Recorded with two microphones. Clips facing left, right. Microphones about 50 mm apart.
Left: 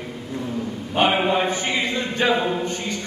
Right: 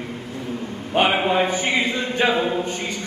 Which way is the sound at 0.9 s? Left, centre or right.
Centre.